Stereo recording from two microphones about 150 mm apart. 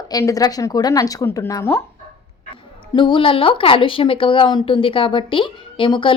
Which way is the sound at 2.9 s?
35° left (ahead or behind).